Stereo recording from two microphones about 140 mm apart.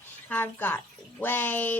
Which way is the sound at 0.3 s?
15° left (ahead or behind).